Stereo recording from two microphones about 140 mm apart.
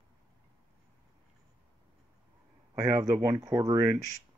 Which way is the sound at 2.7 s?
25° right (ahead or behind).